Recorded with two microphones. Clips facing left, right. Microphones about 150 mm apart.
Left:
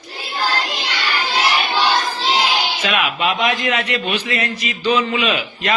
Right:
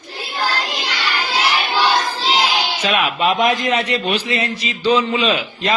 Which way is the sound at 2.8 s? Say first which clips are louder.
Right 4 dB; 35° right (ahead or behind).